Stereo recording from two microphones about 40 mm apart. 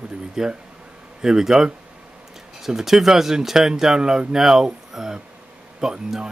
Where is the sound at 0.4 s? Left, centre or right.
Centre.